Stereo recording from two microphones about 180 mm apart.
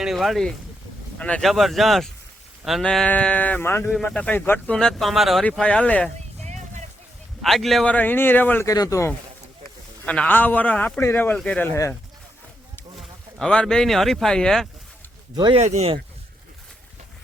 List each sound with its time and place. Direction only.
0.0 s speech: centre (ahead or behind)
6.4 s a sound: 40° right (ahead or behind)
7.4 s speech: centre (ahead or behind)
13.0 s speech: 5° left (ahead or behind)
15.4 s speech: 25° right (ahead or behind)
15.6 s speech: 35° right (ahead or behind)